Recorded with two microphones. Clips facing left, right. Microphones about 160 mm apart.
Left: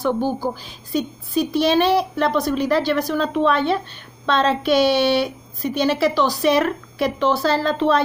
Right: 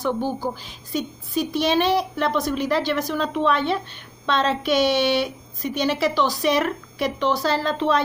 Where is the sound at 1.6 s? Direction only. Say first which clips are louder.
Left 3 dB; 20° right (ahead or behind).